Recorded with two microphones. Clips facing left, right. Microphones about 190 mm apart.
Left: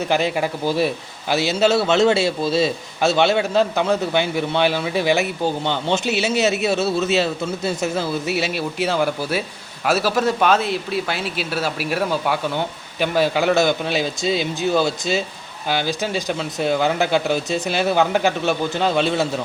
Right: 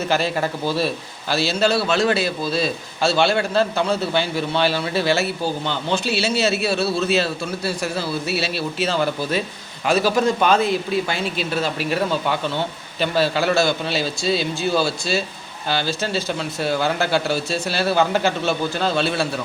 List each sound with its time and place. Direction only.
0.0 s a man's voice: 15° left (ahead or behind)